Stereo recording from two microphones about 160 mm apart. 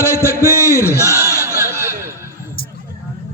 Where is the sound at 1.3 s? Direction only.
15° left (ahead or behind).